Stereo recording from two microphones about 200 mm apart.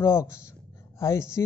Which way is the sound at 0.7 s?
15° left (ahead or behind).